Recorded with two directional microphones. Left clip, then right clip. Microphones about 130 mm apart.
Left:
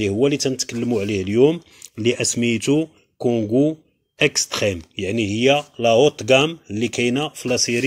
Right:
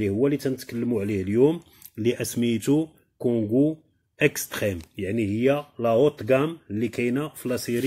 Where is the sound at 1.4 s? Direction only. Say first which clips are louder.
Left 5 dB; 15° left (ahead or behind).